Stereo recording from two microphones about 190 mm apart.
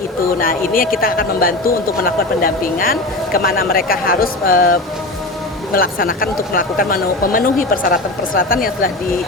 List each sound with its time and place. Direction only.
0.3 s speech: 50° left (ahead or behind)